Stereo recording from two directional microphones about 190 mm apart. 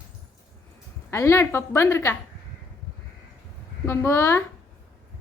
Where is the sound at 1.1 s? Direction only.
15° left (ahead or behind).